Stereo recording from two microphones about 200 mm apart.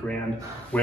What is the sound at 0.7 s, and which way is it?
Speech, 5° left (ahead or behind).